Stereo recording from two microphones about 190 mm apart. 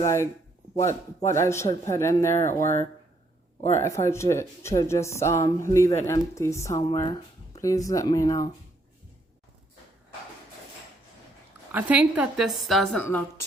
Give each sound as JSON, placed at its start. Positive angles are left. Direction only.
{"t": 0.0, "sound": "speech", "side_deg": 15}
{"t": 3.8, "sound": "speech", "side_deg": 15}
{"t": 11.7, "sound": "a woman's voice", "side_deg": -10}